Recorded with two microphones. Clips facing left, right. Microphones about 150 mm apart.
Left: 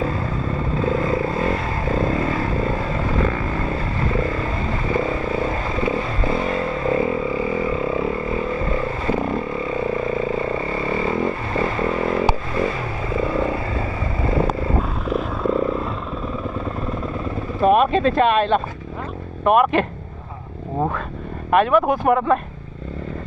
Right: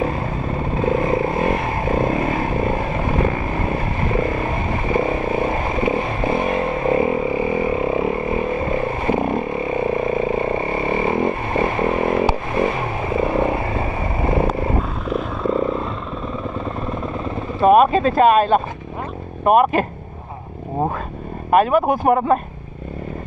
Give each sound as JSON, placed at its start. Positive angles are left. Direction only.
{"t": 0.0, "sound": "vehicle", "side_deg": -20}
{"t": 14.8, "sound": "vehicle", "side_deg": 0}
{"t": 17.6, "sound": "a sound", "side_deg": -45}
{"t": 19.4, "sound": "speech", "side_deg": -45}
{"t": 21.5, "sound": "speech", "side_deg": -45}